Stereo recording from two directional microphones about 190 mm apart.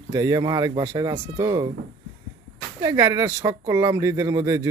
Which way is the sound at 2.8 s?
20° right (ahead or behind).